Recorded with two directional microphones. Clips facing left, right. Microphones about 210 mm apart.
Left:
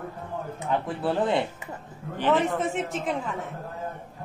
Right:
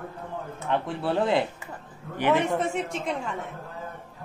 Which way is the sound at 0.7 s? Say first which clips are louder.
Even; centre (ahead or behind).